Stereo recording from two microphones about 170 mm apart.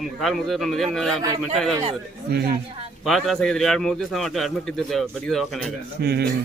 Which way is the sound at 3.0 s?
Centre (ahead or behind).